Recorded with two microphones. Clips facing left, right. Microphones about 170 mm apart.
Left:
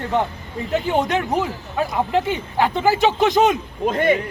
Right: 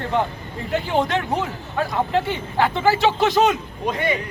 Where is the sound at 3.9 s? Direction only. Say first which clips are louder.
Left 5 dB; 50° left (ahead or behind).